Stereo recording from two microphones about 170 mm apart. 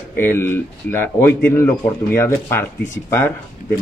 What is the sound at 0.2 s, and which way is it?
Speech, 15° left (ahead or behind).